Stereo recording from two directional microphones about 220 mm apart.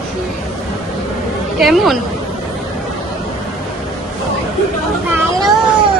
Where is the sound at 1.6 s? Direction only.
Centre (ahead or behind).